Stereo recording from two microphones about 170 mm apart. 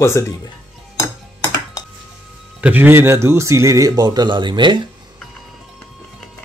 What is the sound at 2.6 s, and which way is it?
Speech, 10° right (ahead or behind).